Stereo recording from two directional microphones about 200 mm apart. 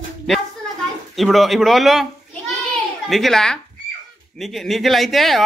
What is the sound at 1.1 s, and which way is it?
A child's voice, centre (ahead or behind).